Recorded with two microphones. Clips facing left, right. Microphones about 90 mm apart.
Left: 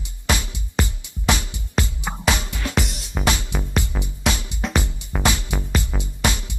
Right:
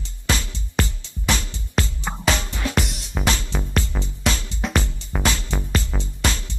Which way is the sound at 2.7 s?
Centre (ahead or behind).